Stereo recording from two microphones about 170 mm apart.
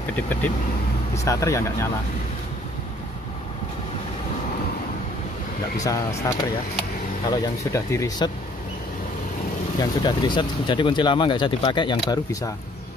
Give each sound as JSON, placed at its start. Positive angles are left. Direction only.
{"t": 0.1, "sound": "speech", "side_deg": 10}
{"t": 5.8, "sound": "speech", "side_deg": 20}
{"t": 9.8, "sound": "speech", "side_deg": 25}